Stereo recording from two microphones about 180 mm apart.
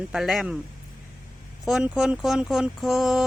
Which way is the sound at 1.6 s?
Centre (ahead or behind).